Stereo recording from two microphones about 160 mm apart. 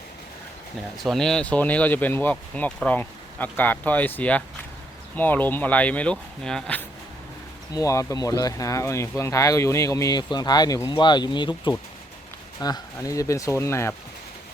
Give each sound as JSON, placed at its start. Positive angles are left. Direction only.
{"t": 1.0, "sound": "speech", "side_deg": 5}
{"t": 7.7, "sound": "speech", "side_deg": 20}